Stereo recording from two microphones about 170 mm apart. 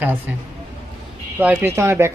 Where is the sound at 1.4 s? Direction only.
10° right (ahead or behind).